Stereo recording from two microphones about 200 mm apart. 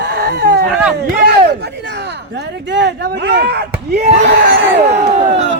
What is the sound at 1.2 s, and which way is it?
Speech, 55° right (ahead or behind).